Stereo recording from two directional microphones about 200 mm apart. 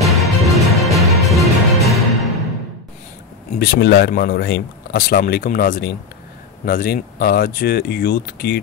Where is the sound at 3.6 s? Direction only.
55° left (ahead or behind).